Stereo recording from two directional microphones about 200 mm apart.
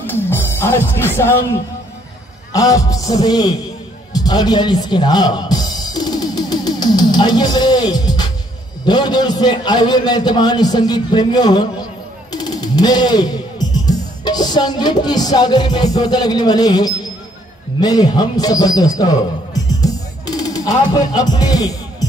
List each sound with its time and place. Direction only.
0.0 s speech: 10° left (ahead or behind)
4.1 s music: 20° left (ahead or behind)
8.8 s a man's voice: 20° left (ahead or behind)
19.8 s music: 20° left (ahead or behind)